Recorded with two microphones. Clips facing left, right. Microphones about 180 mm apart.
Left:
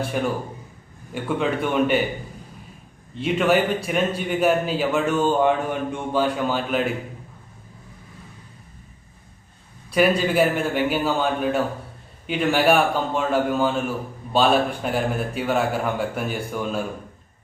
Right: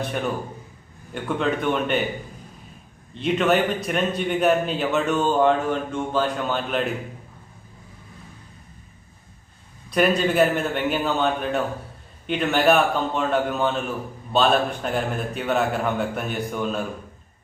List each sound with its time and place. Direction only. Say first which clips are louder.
0.0 s a man's voice: left 2 dB; 10° left (ahead or behind)
3.2 s a man's voice: left 1 dB; 5° left (ahead or behind)
9.9 s a man's voice: left 1 dB; 5° left (ahead or behind)